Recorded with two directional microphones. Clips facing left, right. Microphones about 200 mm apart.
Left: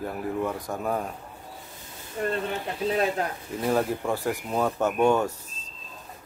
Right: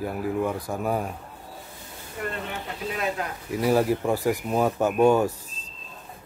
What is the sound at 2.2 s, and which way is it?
Speech, 30° left (ahead or behind).